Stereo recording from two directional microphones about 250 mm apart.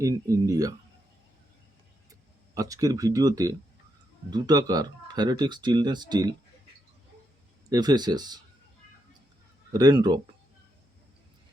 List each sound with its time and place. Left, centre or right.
0.0 s speech: centre
2.6 s speech: centre
7.7 s speech: centre
9.7 s speech: centre